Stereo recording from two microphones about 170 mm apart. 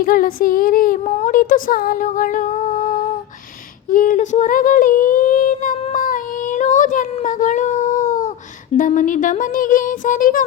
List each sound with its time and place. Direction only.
0.0 s child singing: 55° left (ahead or behind)
1.1 s a sound: 50° left (ahead or behind)
8.8 s speech: 50° left (ahead or behind)